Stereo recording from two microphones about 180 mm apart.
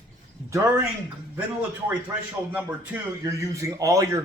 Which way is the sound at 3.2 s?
15° right (ahead or behind).